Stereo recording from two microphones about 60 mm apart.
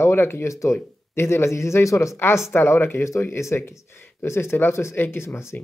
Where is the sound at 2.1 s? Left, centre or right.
Left.